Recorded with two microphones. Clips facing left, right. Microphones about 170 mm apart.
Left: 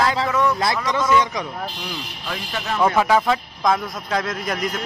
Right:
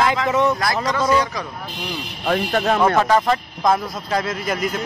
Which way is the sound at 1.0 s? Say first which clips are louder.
Even; 35° right (ahead or behind).